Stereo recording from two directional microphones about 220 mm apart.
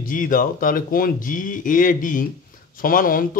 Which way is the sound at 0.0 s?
40° left (ahead or behind).